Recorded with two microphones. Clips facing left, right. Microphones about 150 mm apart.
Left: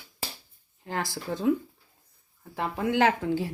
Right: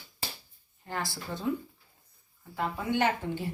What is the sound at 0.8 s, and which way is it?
Speech, 90° left.